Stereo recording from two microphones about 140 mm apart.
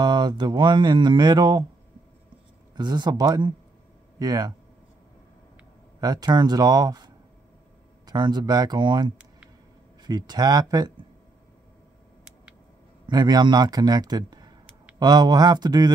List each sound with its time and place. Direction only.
0.0 s speech: 30° right (ahead or behind)
2.7 s a man's voice: 30° right (ahead or behind)
5.9 s a man's voice: 30° right (ahead or behind)
8.1 s a man's voice: 30° right (ahead or behind)
13.0 s a man's voice: 30° right (ahead or behind)